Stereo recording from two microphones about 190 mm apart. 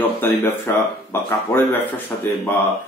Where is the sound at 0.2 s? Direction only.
10° left (ahead or behind).